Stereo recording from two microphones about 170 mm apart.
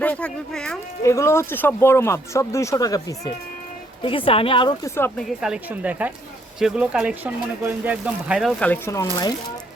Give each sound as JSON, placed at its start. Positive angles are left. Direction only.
{"t": 0.0, "sound": "speech", "side_deg": 5}
{"t": 1.0, "sound": "speech", "side_deg": 15}
{"t": 4.0, "sound": "a woman's voice", "side_deg": 30}
{"t": 4.9, "sound": "speech", "side_deg": 15}
{"t": 5.4, "sound": "speech", "side_deg": -5}